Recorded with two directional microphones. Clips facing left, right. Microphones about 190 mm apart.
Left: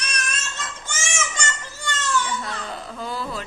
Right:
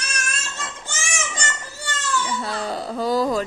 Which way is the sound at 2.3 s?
35° right (ahead or behind).